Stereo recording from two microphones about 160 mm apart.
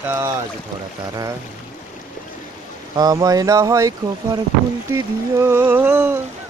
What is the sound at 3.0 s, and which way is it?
Speech, 25° right (ahead or behind).